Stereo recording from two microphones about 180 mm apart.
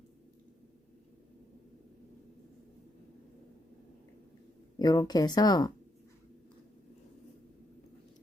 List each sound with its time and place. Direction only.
4.8 s speech: 25° left (ahead or behind)